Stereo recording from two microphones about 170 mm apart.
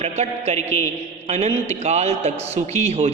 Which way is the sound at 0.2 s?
40° right (ahead or behind).